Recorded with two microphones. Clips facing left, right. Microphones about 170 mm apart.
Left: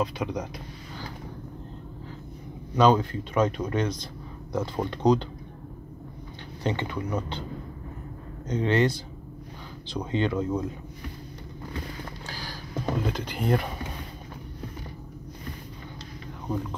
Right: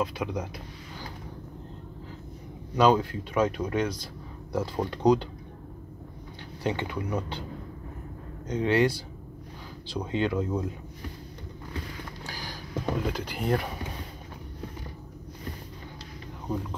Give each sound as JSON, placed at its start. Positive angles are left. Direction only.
{"t": 0.0, "sound": "speech", "side_deg": -5}
{"t": 2.7, "sound": "speech", "side_deg": -5}
{"t": 6.6, "sound": "speech", "side_deg": -10}
{"t": 8.5, "sound": "speech", "side_deg": -10}
{"t": 12.3, "sound": "a sound", "side_deg": -15}
{"t": 12.8, "sound": "speech", "side_deg": -5}